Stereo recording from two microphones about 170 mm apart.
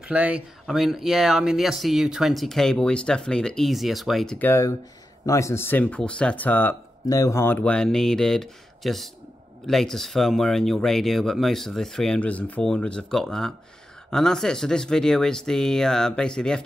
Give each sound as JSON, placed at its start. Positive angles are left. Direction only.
{"t": 0.0, "sound": "speech", "side_deg": -10}
{"t": 4.5, "sound": "speech", "side_deg": 20}